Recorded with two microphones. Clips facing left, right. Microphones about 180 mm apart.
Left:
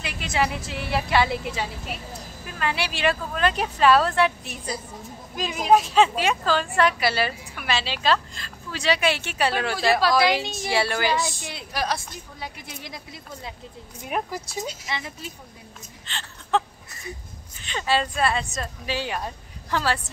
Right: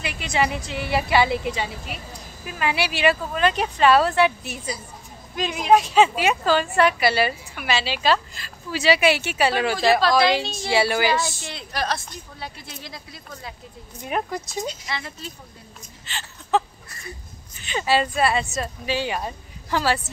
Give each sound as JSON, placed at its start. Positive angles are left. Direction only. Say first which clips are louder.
{"t": 0.0, "sound": "a woman's voice", "louder": "right 2 dB", "side_deg": 0}
{"t": 10.7, "sound": "a woman's voice", "louder": "right 3 dB", "side_deg": -5}
{"t": 11.4, "sound": "a woman's voice", "louder": "right 1 dB", "side_deg": 10}
{"t": 14.0, "sound": "a woman's voice", "louder": "right 2 dB", "side_deg": 5}
{"t": 14.9, "sound": "a woman's voice", "louder": "even", "side_deg": 15}
{"t": 16.1, "sound": "a woman's voice", "louder": "right 2 dB", "side_deg": -5}